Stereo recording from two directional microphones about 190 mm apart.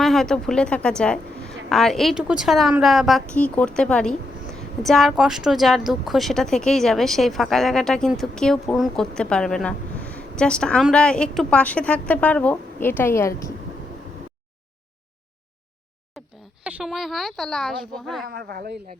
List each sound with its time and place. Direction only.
0.0 s a woman's voice: centre (ahead or behind)
16.1 s a sound: centre (ahead or behind)
16.6 s a woman's voice: 5° right (ahead or behind)
18.3 s speech: 55° right (ahead or behind)